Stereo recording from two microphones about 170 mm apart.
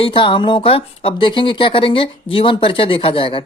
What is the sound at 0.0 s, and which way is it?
Speech, 30° left (ahead or behind).